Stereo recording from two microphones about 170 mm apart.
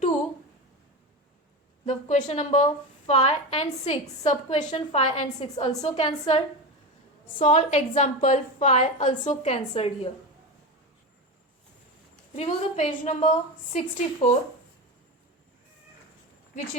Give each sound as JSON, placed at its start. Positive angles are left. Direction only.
{"t": 1.8, "sound": "a woman's voice", "side_deg": 45}
{"t": 7.3, "sound": "a woman's voice", "side_deg": 45}
{"t": 12.4, "sound": "a woman's voice", "side_deg": 40}